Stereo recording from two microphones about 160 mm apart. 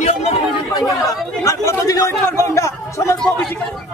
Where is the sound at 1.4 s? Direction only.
20° left (ahead or behind).